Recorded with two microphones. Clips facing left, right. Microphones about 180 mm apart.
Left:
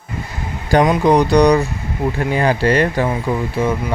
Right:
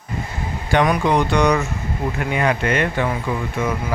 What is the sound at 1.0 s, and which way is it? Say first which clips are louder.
Speech: left 5 dB; 35° left (ahead or behind).